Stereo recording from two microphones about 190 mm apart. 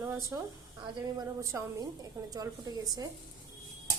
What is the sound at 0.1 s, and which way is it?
A woman's voice, 15° right (ahead or behind).